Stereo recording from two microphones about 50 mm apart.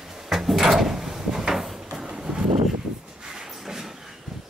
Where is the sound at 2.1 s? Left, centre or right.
Centre.